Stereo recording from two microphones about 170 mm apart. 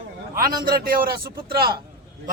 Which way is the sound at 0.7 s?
55° right (ahead or behind).